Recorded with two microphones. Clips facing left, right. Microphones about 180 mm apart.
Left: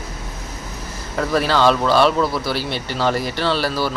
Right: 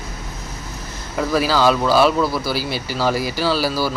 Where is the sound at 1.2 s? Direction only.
5° right (ahead or behind).